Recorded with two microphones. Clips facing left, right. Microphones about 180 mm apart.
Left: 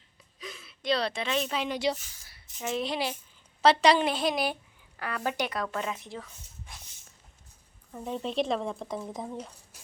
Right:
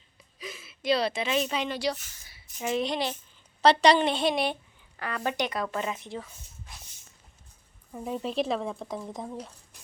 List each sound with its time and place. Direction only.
0.3 s speech: 5° right (ahead or behind)
1.7 s speech: 20° left (ahead or behind)
2.6 s speech: centre (ahead or behind)
7.9 s speech: 5° right (ahead or behind)